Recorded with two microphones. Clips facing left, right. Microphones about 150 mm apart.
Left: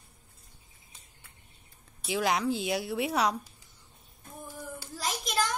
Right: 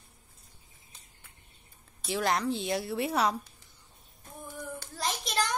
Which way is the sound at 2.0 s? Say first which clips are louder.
Left 1 dB; centre (ahead or behind).